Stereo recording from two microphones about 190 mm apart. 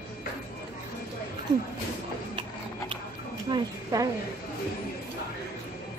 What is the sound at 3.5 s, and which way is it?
Speech, 20° right (ahead or behind).